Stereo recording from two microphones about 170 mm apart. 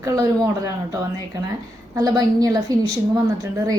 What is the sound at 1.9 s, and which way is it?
Speech, 20° right (ahead or behind).